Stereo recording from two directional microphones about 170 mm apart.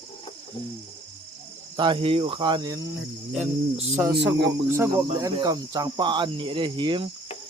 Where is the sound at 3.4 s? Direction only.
40° right (ahead or behind).